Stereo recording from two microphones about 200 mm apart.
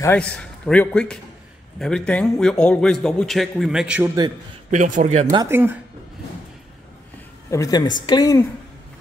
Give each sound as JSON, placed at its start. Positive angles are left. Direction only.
{"t": 0.0, "sound": "a man's voice", "side_deg": 5}
{"t": 4.6, "sound": "speech", "side_deg": -40}
{"t": 5.3, "sound": "speech", "side_deg": -15}
{"t": 7.4, "sound": "a woman's voice", "side_deg": 15}